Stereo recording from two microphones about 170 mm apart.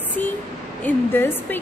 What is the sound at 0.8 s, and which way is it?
Speech, 10° left (ahead or behind).